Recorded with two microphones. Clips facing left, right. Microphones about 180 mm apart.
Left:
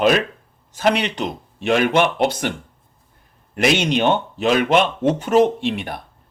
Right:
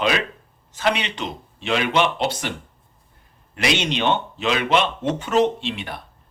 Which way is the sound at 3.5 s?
50° left (ahead or behind).